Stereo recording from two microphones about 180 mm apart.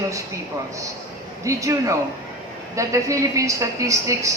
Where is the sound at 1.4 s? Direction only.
15° right (ahead or behind).